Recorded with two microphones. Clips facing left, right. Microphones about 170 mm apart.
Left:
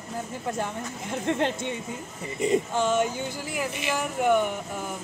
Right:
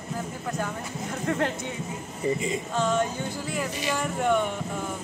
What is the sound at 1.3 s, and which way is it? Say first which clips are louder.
Speech: left 1 dB; 25° left (ahead or behind).